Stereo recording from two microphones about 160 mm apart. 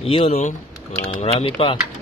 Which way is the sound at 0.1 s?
35° left (ahead or behind).